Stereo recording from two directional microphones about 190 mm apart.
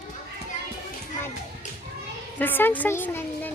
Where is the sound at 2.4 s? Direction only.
10° left (ahead or behind).